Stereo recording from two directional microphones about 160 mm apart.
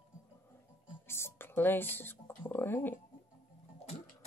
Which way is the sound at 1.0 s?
15° left (ahead or behind).